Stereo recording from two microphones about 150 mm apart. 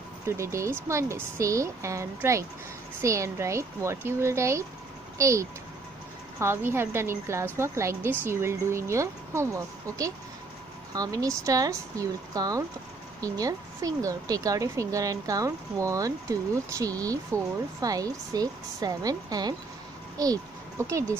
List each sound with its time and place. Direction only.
0.4 s a woman's voice: 20° right (ahead or behind)